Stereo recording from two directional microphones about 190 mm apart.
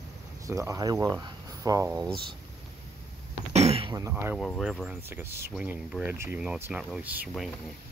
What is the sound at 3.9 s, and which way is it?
Speech, 15° right (ahead or behind).